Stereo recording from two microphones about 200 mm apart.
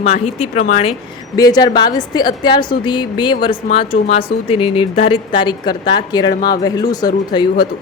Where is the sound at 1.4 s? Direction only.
20° left (ahead or behind).